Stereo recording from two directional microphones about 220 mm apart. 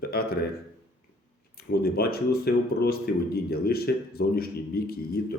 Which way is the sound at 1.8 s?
45° left (ahead or behind).